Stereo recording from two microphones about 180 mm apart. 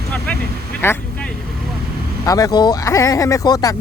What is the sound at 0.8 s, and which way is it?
Speech, 15° left (ahead or behind).